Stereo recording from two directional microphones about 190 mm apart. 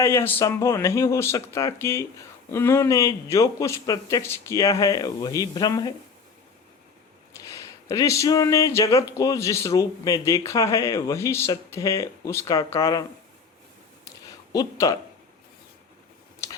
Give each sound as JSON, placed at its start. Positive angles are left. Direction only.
{"t": 0.0, "sound": "speech", "side_deg": 15}
{"t": 7.3, "sound": "speech", "side_deg": 15}
{"t": 14.0, "sound": "a sound", "side_deg": 20}